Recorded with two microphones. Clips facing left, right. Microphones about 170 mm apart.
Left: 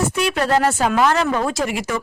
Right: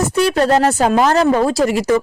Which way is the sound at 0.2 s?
35° right (ahead or behind).